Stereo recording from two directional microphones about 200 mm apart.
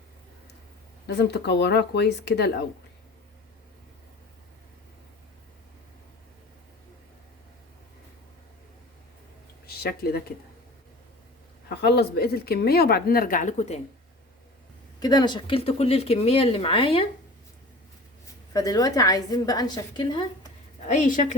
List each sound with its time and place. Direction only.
1.0 s speech: 55° left (ahead or behind)
9.6 s speech: 50° left (ahead or behind)
11.8 s speech: 55° left (ahead or behind); by 13.8 s 35° left (ahead or behind)
14.9 s speech: 20° left (ahead or behind)
18.5 s a woman's voice: 15° left (ahead or behind)
20.8 s a woman's voice: 40° left (ahead or behind)